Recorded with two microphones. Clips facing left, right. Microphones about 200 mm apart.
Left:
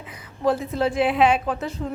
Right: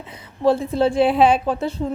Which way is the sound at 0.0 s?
25° right (ahead or behind).